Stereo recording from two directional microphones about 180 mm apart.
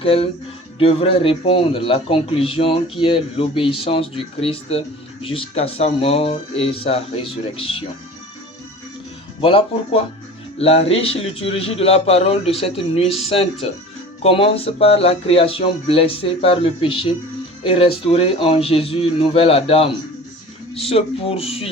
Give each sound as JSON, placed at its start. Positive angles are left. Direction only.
{"t": 0.0, "sound": "a man's voice", "side_deg": 30}
{"t": 9.4, "sound": "a man's voice", "side_deg": 30}